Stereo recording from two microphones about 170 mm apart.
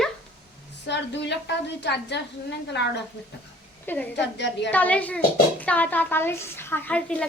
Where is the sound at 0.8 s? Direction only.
90° left.